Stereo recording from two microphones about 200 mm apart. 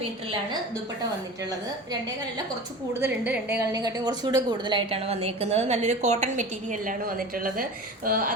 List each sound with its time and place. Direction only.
3.0 s a woman's voice: 10° right (ahead or behind); by 8.4 s 45° right (ahead or behind)